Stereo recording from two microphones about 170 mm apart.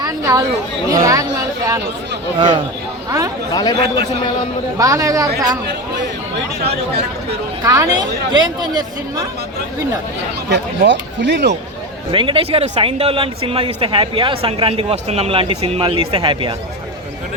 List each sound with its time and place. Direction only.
0.0 s chatter: 20° right (ahead or behind)
0.9 s speech: 20° right (ahead or behind)
3.1 s speech: 20° right (ahead or behind)
3.5 s speech: 25° left (ahead or behind)
3.8 s a man's voice: 70° right (ahead or behind)
4.8 s speech: 20° right (ahead or behind)
7.6 s speech: 20° right (ahead or behind)
10.5 s speech: 90° right
12.1 s speech: 30° right (ahead or behind)